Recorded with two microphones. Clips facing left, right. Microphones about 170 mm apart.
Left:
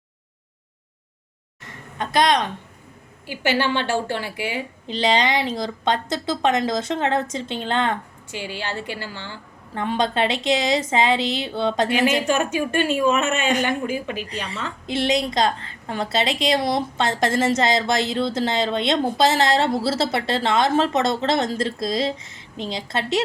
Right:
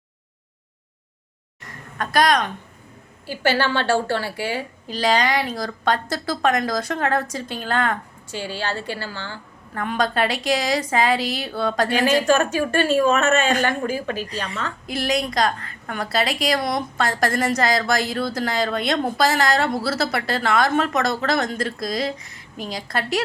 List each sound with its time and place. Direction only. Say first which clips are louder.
2.0 s a woman's voice: even; 25° left (ahead or behind)
12.7 s a woman's voice: right 2 dB; 40° right (ahead or behind)
13.5 s a woman's voice: even; 20° left (ahead or behind)
13.8 s a woman's voice: right 1 dB; 40° right (ahead or behind)
14.8 s a woman's voice: left 3 dB; 25° left (ahead or behind)